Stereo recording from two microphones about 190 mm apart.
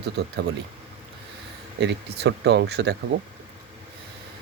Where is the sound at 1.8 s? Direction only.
60° right (ahead or behind).